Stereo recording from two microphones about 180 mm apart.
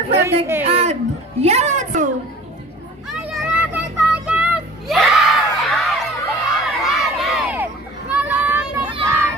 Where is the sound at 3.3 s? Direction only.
5° right (ahead or behind).